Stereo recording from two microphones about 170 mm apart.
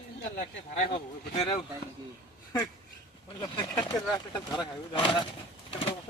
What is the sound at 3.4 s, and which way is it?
Speech, 25° left (ahead or behind).